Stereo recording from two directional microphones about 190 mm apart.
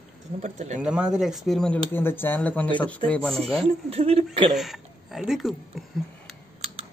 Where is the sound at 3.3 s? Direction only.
30° right (ahead or behind).